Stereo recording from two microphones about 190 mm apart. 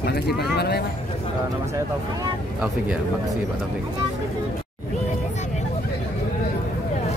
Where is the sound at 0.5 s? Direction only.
60° left (ahead or behind).